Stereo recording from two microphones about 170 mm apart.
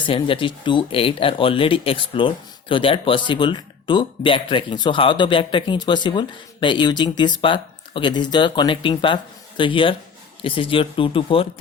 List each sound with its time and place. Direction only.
0.0 s speech: 30° left (ahead or behind)